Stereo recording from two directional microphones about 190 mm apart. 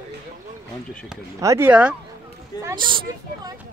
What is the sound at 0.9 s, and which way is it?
Chop, 5° left (ahead or behind).